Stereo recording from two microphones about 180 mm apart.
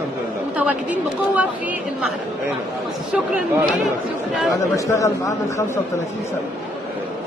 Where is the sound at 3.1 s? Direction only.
10° right (ahead or behind).